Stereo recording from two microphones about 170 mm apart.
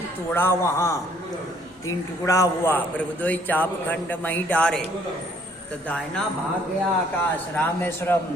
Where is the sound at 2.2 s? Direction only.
15° left (ahead or behind).